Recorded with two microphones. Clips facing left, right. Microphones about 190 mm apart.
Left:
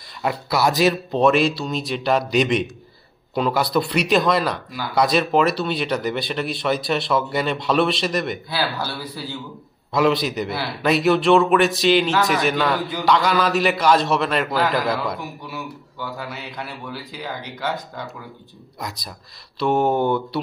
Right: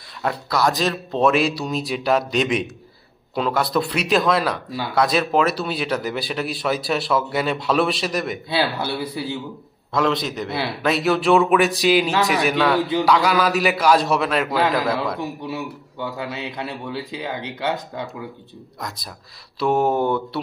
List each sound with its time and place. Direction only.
0.2 s speech: 5° left (ahead or behind)
8.5 s a man's voice: 25° right (ahead or behind)
9.9 s speech: 5° left (ahead or behind)
15.1 s a man's voice: 25° right (ahead or behind)
18.8 s speech: centre (ahead or behind)